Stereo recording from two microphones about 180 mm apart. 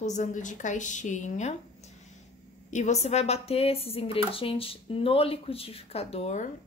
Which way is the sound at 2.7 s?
40° left (ahead or behind).